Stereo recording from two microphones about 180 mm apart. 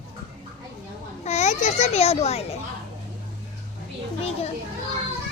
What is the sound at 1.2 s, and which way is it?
A child's voice, 40° left (ahead or behind).